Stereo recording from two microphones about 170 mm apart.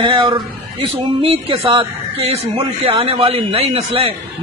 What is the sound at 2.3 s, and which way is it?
A man's voice, 35° right (ahead or behind).